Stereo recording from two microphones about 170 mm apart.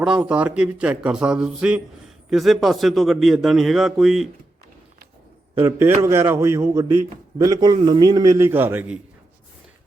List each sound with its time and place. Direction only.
0.0 s a man's voice: 5° right (ahead or behind)
5.6 s a man's voice: 15° right (ahead or behind)